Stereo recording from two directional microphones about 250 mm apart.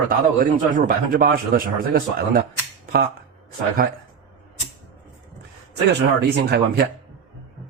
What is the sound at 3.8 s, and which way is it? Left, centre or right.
Speech, right.